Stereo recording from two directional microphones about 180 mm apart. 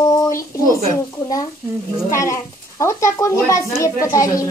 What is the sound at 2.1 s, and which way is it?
Speech, 15° left (ahead or behind).